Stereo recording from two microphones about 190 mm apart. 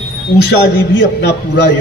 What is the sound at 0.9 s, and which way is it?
Speech, 70° left (ahead or behind).